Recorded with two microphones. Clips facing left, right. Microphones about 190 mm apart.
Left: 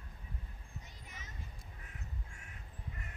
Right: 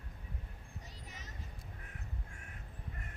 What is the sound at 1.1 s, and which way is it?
Vehicle, 40° right (ahead or behind).